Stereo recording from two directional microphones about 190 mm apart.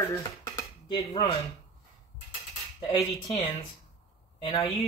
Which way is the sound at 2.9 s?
30° left (ahead or behind).